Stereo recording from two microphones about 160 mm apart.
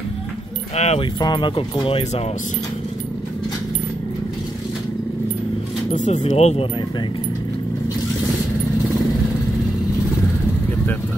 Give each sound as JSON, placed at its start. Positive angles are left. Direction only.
{"t": 0.7, "sound": "speech", "side_deg": 40}
{"t": 1.2, "sound": "speech", "side_deg": 30}
{"t": 5.9, "sound": "speech", "side_deg": 45}